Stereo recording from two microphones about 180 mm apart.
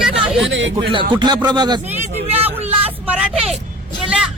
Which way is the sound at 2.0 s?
35° right (ahead or behind).